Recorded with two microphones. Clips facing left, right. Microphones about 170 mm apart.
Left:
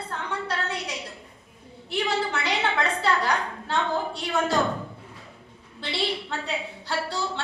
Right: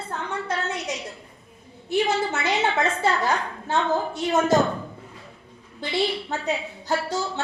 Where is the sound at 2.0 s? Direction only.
20° right (ahead or behind).